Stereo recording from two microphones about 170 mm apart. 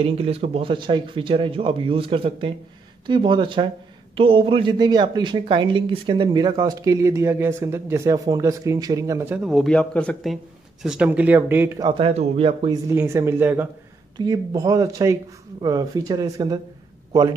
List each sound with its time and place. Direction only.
0.0 s speech: 35° right (ahead or behind); by 11.9 s 15° right (ahead or behind)
11.9 s speech: 35° right (ahead or behind)
12.9 s speech: 15° right (ahead or behind)
14.1 s speech: 20° right (ahead or behind)